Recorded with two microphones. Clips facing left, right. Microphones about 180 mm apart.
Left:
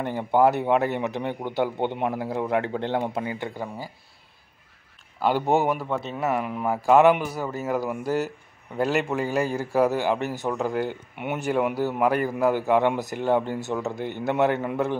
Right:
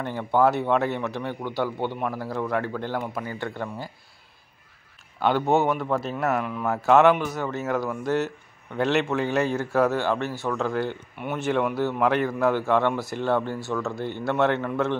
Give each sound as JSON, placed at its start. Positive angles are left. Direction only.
{"t": 0.0, "sound": "a man's voice", "side_deg": 15}
{"t": 5.2, "sound": "a man's voice", "side_deg": 10}